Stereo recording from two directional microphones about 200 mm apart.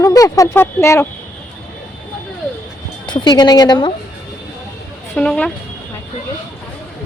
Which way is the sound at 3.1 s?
20° left (ahead or behind).